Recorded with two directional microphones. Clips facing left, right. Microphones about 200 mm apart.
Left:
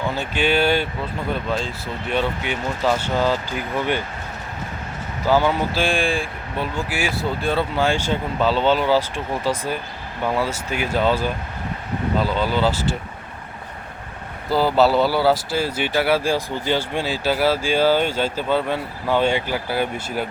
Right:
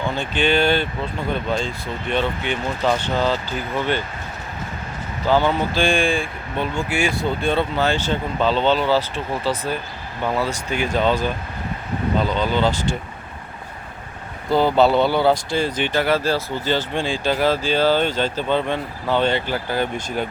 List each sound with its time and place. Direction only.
0.1 s speech: 5° left (ahead or behind)
5.2 s speech: 10° left (ahead or behind)
14.5 s speech: 5° left (ahead or behind)